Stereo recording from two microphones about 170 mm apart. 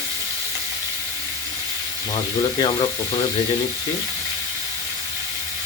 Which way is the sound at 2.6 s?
30° left (ahead or behind).